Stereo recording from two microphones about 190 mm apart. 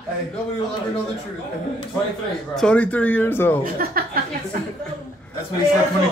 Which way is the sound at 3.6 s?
50° right (ahead or behind).